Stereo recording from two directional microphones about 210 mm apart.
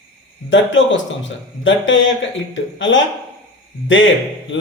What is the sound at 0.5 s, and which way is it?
Speech, 65° left (ahead or behind).